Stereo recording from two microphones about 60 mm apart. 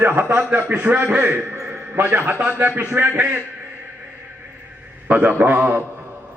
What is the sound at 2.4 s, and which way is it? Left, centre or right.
A man's voice, right.